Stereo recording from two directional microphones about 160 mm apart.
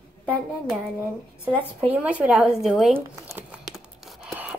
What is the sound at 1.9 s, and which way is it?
Speech, 10° right (ahead or behind).